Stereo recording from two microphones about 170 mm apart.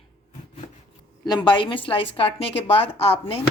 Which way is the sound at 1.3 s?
25° left (ahead or behind).